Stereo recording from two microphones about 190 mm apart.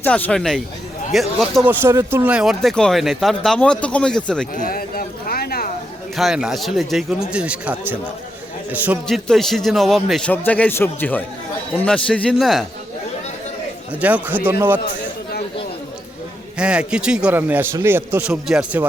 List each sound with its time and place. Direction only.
0.0 s speech: 5° left (ahead or behind)
1.8 s speech: 15° right (ahead or behind); by 4.4 s 5° left (ahead or behind)
4.5 s a sound: 50° left (ahead or behind)
6.1 s a man's voice: centre (ahead or behind)
9.0 s speech: centre (ahead or behind)
14.0 s a man's voice: 10° right (ahead or behind)
16.6 s speech: 5° right (ahead or behind)